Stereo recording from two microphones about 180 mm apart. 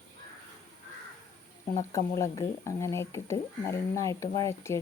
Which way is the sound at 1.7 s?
20° left (ahead or behind).